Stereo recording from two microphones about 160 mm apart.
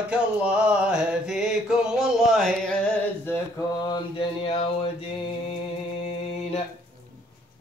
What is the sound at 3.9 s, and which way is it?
Mantra, 35° left (ahead or behind).